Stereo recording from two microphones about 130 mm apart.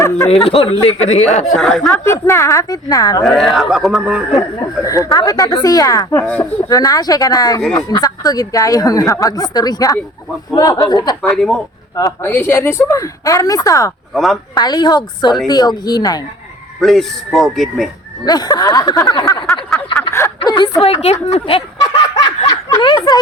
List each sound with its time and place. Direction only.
0.3 s speech: 50° left (ahead or behind)
1.6 s a man's voice: centre (ahead or behind)
2.0 s speech: 20° left (ahead or behind)
3.2 s a man's voice: centre (ahead or behind)
4.4 s speech: 25° left (ahead or behind)
11.2 s a man's voice: 5° left (ahead or behind)
12.2 s speech: 15° left (ahead or behind)
14.1 s speech: centre (ahead or behind)
14.5 s speech: 30° left (ahead or behind)
16.8 s a man's voice: centre (ahead or behind)
18.3 s speech: 30° left (ahead or behind)
20.8 s speech: 50° left (ahead or behind)